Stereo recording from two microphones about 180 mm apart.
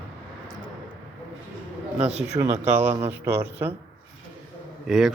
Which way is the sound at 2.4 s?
30° right (ahead or behind).